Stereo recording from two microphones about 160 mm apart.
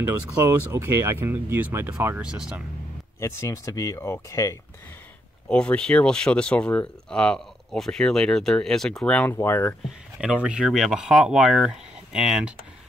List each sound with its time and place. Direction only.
0.0 s speech: 15° right (ahead or behind)
3.2 s speech: 15° left (ahead or behind)
5.5 s speech: 5° left (ahead or behind)
9.8 s speech: 5° right (ahead or behind)